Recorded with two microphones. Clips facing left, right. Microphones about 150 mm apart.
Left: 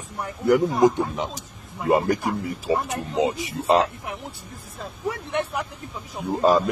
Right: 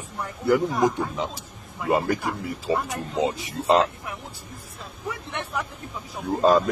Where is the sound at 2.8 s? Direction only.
10° left (ahead or behind).